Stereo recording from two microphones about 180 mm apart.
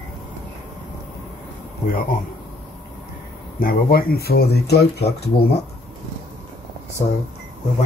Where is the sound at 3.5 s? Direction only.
55° left (ahead or behind).